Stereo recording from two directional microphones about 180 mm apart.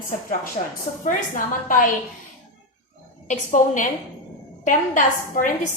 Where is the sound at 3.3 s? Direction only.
45° left (ahead or behind).